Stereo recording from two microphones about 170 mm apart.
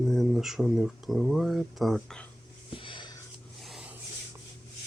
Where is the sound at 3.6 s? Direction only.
5° right (ahead or behind).